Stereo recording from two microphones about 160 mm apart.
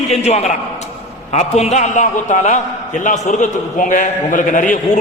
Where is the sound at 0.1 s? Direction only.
40° left (ahead or behind).